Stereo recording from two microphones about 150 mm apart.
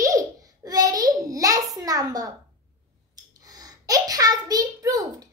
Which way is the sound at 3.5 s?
25° right (ahead or behind).